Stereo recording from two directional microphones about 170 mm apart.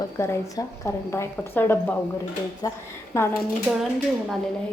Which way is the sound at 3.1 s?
15° left (ahead or behind).